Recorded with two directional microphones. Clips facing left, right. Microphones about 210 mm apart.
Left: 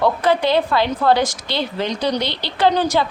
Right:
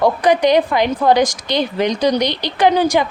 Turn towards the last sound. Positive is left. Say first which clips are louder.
# right 3 dB
turn(degrees=-15)  # may be behind; listen again after turning